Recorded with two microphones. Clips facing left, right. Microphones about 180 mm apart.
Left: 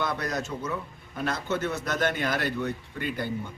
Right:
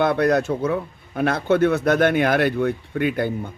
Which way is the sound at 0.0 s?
60° right (ahead or behind).